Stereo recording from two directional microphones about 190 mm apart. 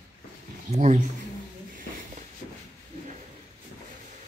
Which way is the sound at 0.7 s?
40° right (ahead or behind).